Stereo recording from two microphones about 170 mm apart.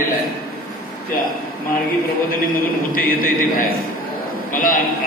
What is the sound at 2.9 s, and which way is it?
A man's voice, 55° left (ahead or behind).